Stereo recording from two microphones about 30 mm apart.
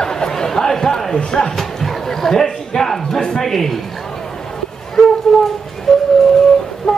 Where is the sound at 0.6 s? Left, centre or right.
Centre.